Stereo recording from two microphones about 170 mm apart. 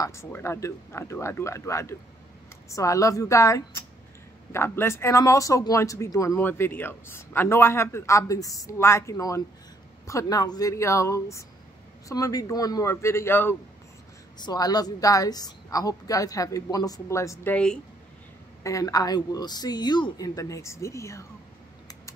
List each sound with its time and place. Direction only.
0.0 s a woman's voice: 15° left (ahead or behind)
14.4 s a woman's voice: 25° left (ahead or behind)